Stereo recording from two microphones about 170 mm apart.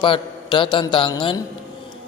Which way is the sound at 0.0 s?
30° left (ahead or behind).